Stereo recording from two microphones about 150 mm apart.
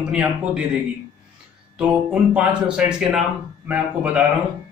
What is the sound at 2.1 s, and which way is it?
A man's voice, 5° right (ahead or behind).